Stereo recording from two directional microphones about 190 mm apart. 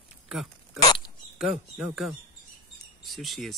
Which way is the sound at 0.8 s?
25° left (ahead or behind).